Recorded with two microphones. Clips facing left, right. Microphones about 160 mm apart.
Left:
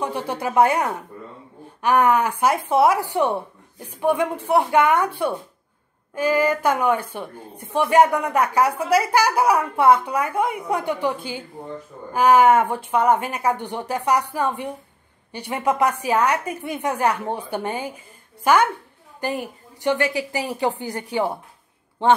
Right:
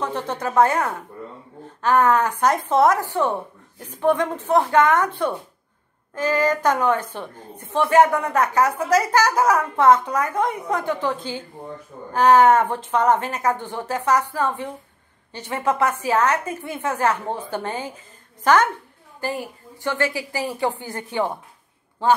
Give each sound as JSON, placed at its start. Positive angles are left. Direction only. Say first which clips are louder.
{"t": 0.0, "sound": "a woman's voice", "louder": "even", "side_deg": 10}